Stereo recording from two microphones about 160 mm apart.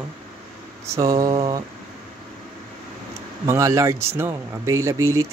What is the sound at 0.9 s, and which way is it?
Speech, 20° right (ahead or behind).